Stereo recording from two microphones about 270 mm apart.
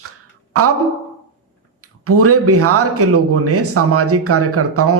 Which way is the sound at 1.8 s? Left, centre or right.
Right.